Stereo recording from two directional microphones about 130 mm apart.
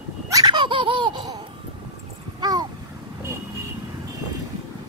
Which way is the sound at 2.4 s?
30° right (ahead or behind).